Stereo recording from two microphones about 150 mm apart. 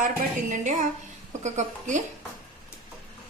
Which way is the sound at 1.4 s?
50° right (ahead or behind).